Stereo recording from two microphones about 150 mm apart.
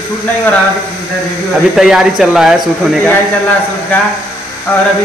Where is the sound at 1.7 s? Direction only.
5° right (ahead or behind).